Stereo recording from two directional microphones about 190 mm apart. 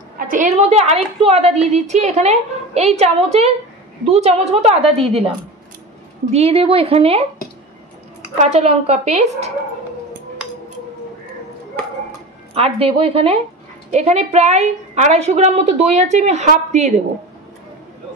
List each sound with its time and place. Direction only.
0.2 s a sound: 45° right (ahead or behind)
0.6 s a woman's voice: 35° right (ahead or behind)
6.3 s a woman's voice: 30° right (ahead or behind)
8.4 s a woman's voice: 35° right (ahead or behind)
12.5 s a woman's voice: 30° right (ahead or behind)